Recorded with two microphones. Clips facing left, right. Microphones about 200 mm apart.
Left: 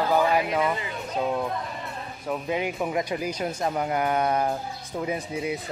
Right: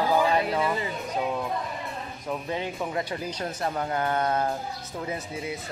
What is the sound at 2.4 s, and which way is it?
Speech, 15° left (ahead or behind).